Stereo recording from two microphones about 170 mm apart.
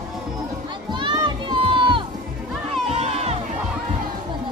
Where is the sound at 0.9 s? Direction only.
25° right (ahead or behind).